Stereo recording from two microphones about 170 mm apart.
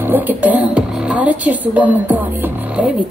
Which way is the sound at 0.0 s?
10° right (ahead or behind).